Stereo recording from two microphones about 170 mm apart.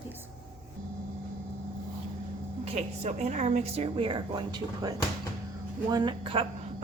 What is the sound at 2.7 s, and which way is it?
A woman's voice, 40° right (ahead or behind).